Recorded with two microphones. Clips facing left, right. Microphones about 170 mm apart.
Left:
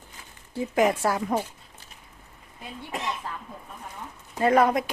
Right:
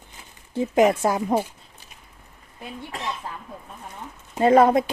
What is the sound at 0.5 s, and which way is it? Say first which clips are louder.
Speech: right 4 dB; 20° right (ahead or behind).